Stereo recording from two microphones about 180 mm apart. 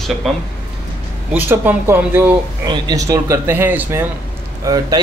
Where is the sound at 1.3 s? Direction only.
10° right (ahead or behind).